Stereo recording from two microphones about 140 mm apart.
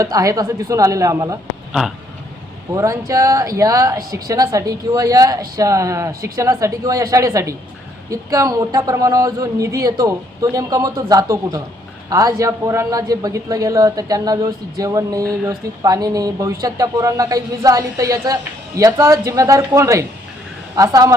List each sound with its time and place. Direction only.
0.0 s a man's voice: 25° right (ahead or behind)
2.7 s a man's voice: 20° right (ahead or behind)